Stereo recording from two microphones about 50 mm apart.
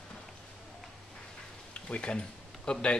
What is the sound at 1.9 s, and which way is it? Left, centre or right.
Speech, centre.